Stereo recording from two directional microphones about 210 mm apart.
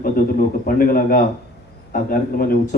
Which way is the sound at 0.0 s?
40° left (ahead or behind).